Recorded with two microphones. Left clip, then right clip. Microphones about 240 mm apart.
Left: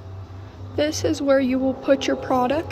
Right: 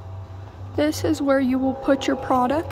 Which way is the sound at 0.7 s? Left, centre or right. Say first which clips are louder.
Even; right.